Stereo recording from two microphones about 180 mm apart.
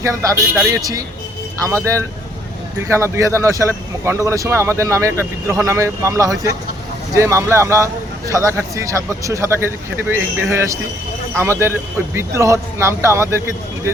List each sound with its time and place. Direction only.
0.0 s speech: 15° right (ahead or behind)